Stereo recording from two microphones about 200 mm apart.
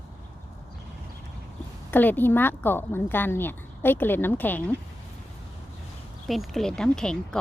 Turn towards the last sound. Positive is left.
turn(degrees=5)  # may be behind; listen again after turning